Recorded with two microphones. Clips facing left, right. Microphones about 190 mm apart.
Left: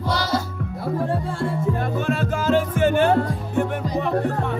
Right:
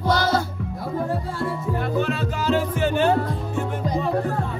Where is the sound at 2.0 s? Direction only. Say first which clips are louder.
Left 2 dB; 50° left (ahead or behind).